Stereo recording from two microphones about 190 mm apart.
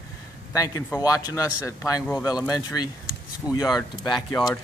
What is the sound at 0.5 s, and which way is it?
A man's voice, 15° left (ahead or behind).